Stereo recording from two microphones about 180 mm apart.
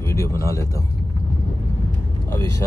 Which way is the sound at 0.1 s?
15° left (ahead or behind).